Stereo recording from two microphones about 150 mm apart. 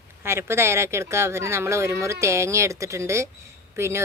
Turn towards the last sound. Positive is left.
turn(degrees=-15)  # may be behind; listen again after turning